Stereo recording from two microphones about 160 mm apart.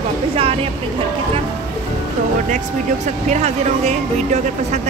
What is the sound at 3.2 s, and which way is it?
Speech, 45° right (ahead or behind).